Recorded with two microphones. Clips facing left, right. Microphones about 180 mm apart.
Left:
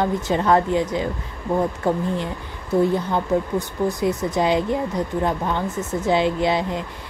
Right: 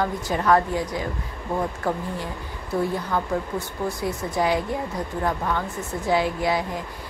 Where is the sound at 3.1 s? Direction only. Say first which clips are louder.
Left 4 dB; 20° left (ahead or behind).